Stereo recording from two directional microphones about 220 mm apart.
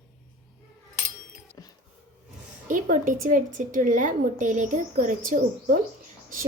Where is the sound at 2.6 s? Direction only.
35° right (ahead or behind).